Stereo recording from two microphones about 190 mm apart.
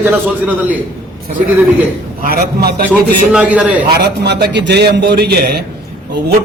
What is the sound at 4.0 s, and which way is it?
A man's voice, 60° right (ahead or behind).